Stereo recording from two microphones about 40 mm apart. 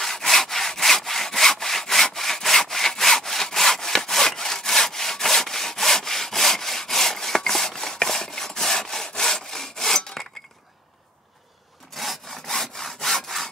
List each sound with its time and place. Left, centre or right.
0.0 s sawing: centre
11.9 s sawing: centre